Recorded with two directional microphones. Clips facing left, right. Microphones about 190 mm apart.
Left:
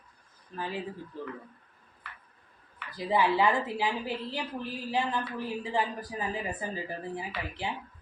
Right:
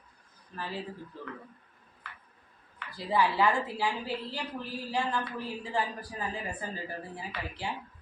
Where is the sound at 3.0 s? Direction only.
20° left (ahead or behind).